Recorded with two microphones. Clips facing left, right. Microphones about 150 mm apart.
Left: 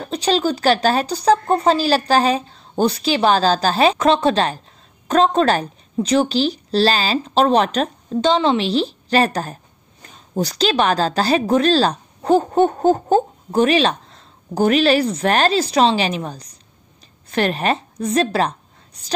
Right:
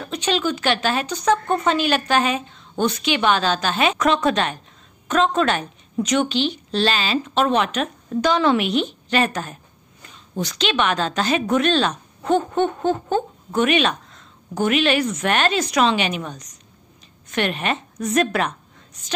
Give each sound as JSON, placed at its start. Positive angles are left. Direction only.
{"t": 0.0, "sound": "a woman's voice", "side_deg": 35}